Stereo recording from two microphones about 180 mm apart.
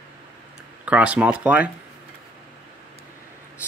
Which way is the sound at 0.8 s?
5° right (ahead or behind).